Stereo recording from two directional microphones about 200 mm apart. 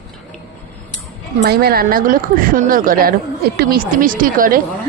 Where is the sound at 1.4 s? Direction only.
50° right (ahead or behind).